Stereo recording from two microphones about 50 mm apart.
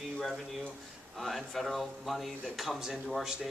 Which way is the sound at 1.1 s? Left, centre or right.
Centre.